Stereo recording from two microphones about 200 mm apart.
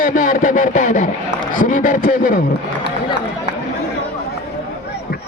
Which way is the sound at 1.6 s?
40° left (ahead or behind).